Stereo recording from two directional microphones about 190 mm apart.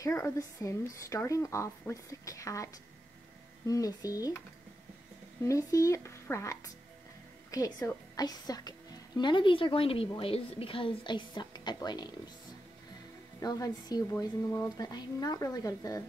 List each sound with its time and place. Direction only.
0.0 s a woman's voice: 15° left (ahead or behind)
5.4 s a woman's voice: 15° left (ahead or behind)
13.4 s a woman's voice: 20° left (ahead or behind)